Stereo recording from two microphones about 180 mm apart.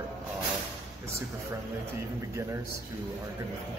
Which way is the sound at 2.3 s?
15° right (ahead or behind).